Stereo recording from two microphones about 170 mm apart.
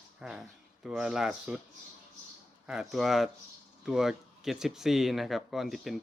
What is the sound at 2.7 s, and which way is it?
Speech, centre (ahead or behind).